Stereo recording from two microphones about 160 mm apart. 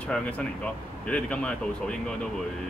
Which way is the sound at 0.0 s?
5° left (ahead or behind).